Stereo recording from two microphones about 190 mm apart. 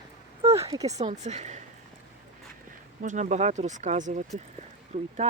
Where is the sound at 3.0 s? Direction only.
40° right (ahead or behind).